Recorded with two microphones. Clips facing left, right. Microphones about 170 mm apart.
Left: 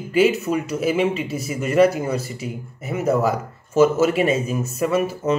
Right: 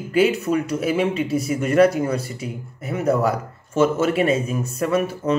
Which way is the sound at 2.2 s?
30° right (ahead or behind).